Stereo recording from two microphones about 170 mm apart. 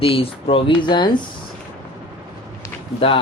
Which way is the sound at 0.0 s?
35° left (ahead or behind).